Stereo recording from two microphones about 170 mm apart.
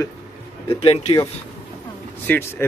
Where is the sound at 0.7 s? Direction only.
35° left (ahead or behind).